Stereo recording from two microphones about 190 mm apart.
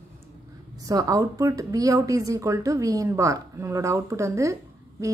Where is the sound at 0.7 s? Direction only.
20° right (ahead or behind).